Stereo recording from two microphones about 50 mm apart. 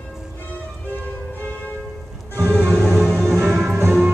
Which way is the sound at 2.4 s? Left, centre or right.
Right.